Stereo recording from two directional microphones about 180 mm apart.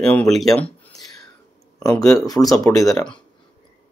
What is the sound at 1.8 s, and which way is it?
Speech, 20° left (ahead or behind).